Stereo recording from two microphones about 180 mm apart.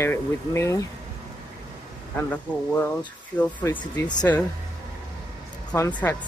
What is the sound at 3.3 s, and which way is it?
Speech, 15° left (ahead or behind).